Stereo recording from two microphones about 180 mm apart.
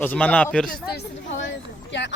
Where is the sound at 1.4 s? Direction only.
75° left (ahead or behind).